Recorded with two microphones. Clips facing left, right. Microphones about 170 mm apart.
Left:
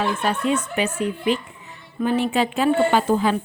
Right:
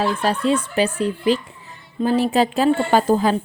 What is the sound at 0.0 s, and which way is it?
Speech, 35° right (ahead or behind).